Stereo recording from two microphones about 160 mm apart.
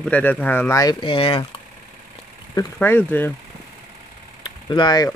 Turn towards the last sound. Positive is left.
turn(degrees=25)  # may be behind; listen again after turning